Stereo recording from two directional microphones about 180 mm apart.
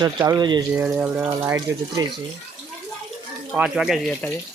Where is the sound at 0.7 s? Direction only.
10° right (ahead or behind).